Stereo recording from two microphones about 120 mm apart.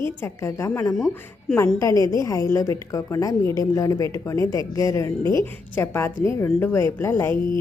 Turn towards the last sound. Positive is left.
turn(degrees=20)  # may be behind; listen again after turning